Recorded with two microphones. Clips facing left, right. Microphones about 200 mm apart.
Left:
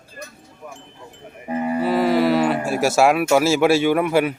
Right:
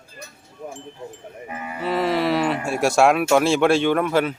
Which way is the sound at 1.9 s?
Centre (ahead or behind).